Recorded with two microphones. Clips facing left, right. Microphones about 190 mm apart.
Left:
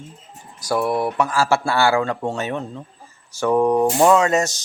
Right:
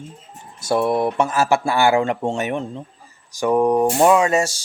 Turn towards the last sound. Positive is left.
turn(degrees=-10)  # may be behind; listen again after turning